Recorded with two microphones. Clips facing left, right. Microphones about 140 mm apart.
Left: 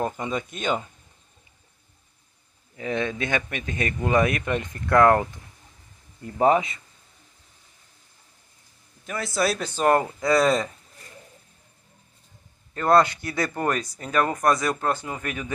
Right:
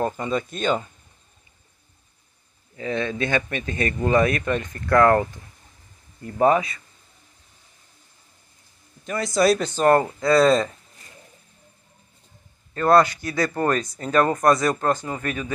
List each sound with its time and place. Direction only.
0.0 s speech: 10° left (ahead or behind)
2.8 s speech: 15° left (ahead or behind)
6.2 s speech: 20° left (ahead or behind)
9.0 s speech: 5° left (ahead or behind)
12.7 s speech: 20° left (ahead or behind)
13.7 s speech: 10° left (ahead or behind)